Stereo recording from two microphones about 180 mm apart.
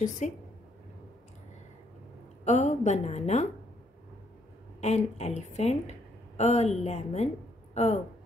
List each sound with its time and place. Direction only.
0.2 s a woman's voice: 45° left (ahead or behind)
2.4 s a woman's voice: 40° left (ahead or behind)
4.7 s a woman's voice: 35° left (ahead or behind)